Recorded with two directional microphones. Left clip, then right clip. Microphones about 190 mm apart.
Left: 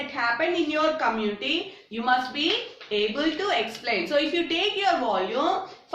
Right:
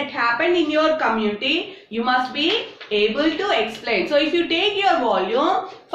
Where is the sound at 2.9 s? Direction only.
15° left (ahead or behind).